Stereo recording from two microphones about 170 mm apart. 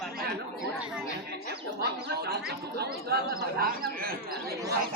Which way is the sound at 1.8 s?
70° right (ahead or behind).